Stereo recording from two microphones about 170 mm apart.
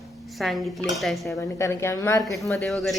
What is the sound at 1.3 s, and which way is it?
Speech, 15° left (ahead or behind).